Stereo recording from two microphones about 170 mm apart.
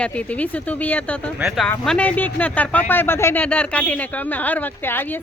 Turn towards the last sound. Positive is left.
turn(degrees=10)  # may be behind; listen again after turning